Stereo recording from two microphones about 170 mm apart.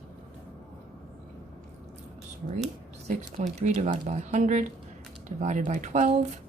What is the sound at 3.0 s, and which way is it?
Speech, 45° right (ahead or behind).